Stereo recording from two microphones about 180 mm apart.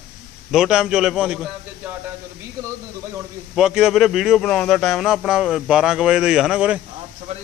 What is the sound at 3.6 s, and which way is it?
Speech, centre (ahead or behind).